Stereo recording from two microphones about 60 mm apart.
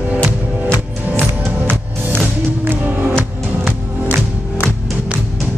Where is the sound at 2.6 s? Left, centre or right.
Right.